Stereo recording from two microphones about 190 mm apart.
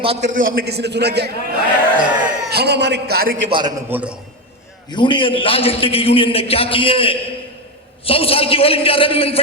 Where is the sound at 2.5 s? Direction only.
60° right (ahead or behind).